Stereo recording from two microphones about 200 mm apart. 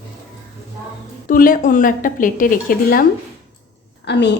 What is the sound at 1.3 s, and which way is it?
Speech, 45° left (ahead or behind).